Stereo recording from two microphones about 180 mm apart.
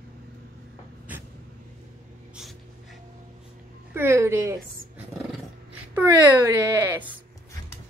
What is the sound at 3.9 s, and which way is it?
Speech, 15° right (ahead or behind).